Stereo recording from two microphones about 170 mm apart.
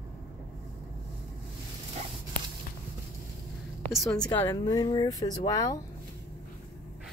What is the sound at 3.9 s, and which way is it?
Speech, 5° left (ahead or behind).